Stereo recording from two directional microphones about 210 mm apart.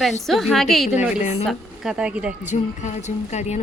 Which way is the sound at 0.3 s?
Centre (ahead or behind).